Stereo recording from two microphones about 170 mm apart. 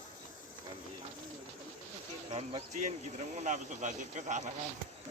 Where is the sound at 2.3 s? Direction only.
35° right (ahead or behind).